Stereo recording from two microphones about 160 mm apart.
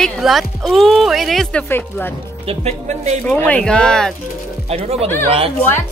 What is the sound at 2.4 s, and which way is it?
Speech, 40° right (ahead or behind).